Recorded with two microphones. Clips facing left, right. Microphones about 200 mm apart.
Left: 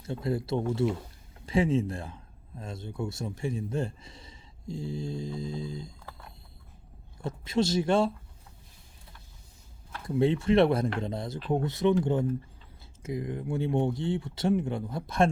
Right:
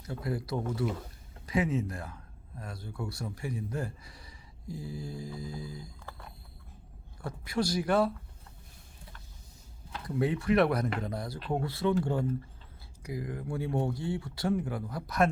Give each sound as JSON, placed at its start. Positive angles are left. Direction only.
{"t": 0.0, "sound": "speech", "side_deg": 25}
{"t": 7.2, "sound": "speech", "side_deg": 25}
{"t": 10.2, "sound": "speech", "side_deg": 25}
{"t": 11.3, "sound": "speech", "side_deg": 0}
{"t": 11.6, "sound": "speech", "side_deg": 20}
{"t": 13.0, "sound": "speech", "side_deg": 25}